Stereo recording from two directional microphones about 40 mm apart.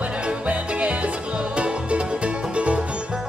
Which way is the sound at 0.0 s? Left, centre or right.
Right.